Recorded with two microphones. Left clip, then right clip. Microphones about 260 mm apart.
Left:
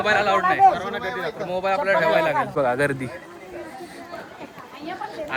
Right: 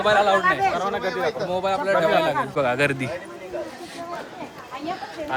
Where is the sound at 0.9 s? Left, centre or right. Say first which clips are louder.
Right 2 dB; right.